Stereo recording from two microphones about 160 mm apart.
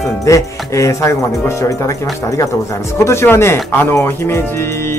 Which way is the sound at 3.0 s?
15° left (ahead or behind).